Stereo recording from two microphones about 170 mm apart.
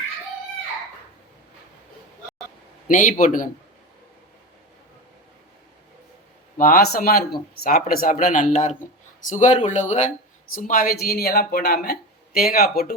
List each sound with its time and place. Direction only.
2.8 s speech: 50° left (ahead or behind)
6.6 s speech: 60° left (ahead or behind)
10.5 s speech: 55° left (ahead or behind)